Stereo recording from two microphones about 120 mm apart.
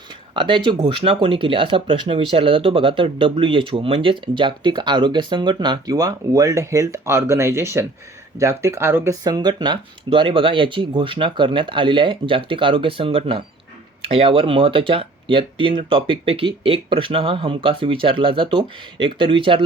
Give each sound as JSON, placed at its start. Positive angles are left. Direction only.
{"t": 0.3, "sound": "speech", "side_deg": -45}
{"t": 9.2, "sound": "speech", "side_deg": -35}
{"t": 10.1, "sound": "speech", "side_deg": -50}